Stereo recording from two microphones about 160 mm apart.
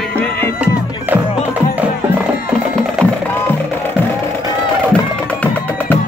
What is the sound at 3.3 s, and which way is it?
Music, 15° left (ahead or behind).